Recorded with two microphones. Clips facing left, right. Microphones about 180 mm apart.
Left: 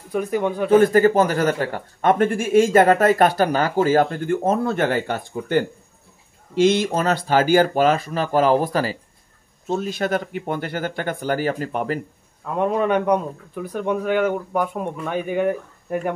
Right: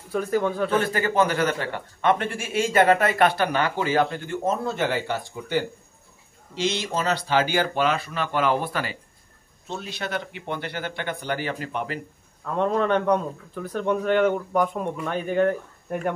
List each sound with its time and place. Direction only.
0.1 s speech: 15° left (ahead or behind)
0.7 s a man's voice: 45° left (ahead or behind)
12.4 s speech: 10° left (ahead or behind)